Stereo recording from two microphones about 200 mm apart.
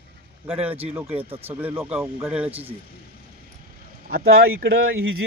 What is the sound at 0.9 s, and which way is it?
Speech, 10° right (ahead or behind).